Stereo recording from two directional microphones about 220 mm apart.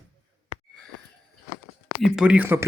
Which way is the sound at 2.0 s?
5° right (ahead or behind).